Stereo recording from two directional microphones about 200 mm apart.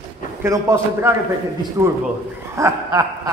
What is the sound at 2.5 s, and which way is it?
Dog, 15° right (ahead or behind).